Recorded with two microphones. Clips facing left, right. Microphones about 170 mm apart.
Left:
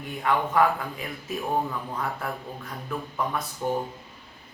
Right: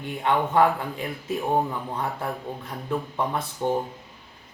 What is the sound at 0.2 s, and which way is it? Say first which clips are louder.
Speech: right 2 dB; 25° right (ahead or behind).